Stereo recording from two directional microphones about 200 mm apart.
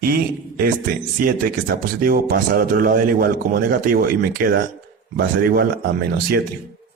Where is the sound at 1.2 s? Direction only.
45° right (ahead or behind).